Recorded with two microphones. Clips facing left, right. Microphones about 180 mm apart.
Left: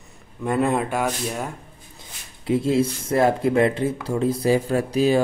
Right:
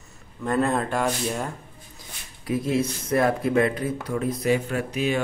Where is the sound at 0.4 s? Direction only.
15° left (ahead or behind).